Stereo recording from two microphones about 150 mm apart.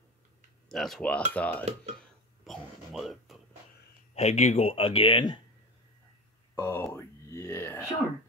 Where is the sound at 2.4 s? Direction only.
Centre (ahead or behind).